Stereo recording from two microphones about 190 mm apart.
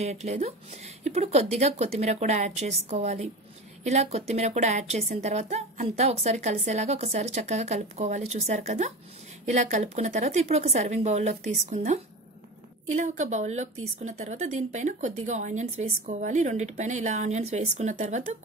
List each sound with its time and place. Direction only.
0.0 s a woman's voice: 35° right (ahead or behind)